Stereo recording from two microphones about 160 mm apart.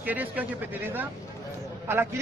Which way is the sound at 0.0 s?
10° right (ahead or behind).